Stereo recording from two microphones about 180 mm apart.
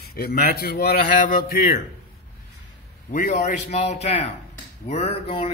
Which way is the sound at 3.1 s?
45° left (ahead or behind).